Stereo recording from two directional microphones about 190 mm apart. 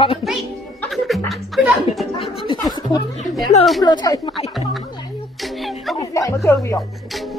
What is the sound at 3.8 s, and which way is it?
Speech, 20° left (ahead or behind).